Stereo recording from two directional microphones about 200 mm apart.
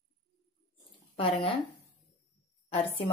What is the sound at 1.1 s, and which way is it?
Speech, 30° left (ahead or behind).